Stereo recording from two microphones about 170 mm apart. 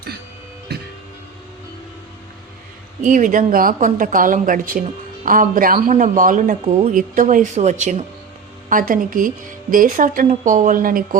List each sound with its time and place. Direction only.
0.7 s music: 75° right (ahead or behind)
3.0 s speech: 50° right (ahead or behind)